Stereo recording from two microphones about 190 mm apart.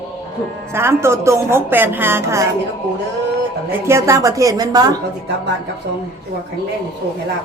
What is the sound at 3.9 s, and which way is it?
A woman's voice, 15° right (ahead or behind).